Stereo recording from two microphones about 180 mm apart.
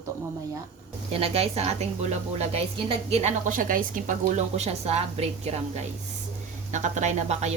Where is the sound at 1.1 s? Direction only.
35° right (ahead or behind).